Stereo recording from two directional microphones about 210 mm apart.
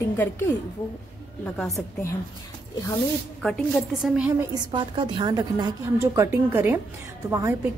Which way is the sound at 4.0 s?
5° right (ahead or behind).